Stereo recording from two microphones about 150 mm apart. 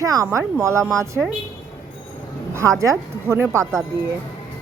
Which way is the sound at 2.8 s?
20° right (ahead or behind).